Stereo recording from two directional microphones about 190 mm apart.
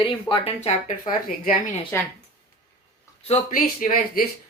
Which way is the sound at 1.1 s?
45° left (ahead or behind).